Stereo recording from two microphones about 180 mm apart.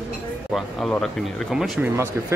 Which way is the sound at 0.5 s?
Centre (ahead or behind).